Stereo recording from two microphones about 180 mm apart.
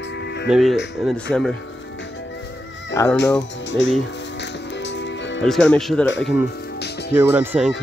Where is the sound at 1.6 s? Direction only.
90° left.